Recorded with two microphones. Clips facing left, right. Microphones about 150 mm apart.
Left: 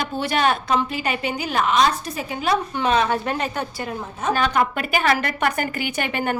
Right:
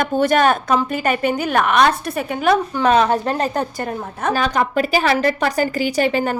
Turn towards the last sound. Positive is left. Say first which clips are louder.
# right 6 dB
turn(degrees=-35)  # may be behind; listen again after turning